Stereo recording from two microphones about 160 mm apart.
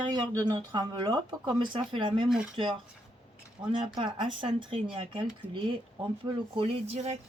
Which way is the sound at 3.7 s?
30° right (ahead or behind).